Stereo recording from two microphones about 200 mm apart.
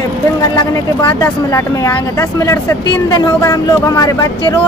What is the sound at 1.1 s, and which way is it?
Speech, 15° left (ahead or behind).